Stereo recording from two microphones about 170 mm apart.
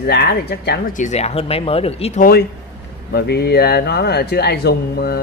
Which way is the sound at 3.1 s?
70° left (ahead or behind).